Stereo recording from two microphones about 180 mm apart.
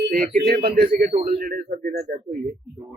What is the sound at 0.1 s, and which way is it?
Speech, 55° right (ahead or behind).